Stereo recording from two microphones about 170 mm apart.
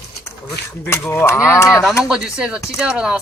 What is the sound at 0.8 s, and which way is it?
Speech, 15° left (ahead or behind).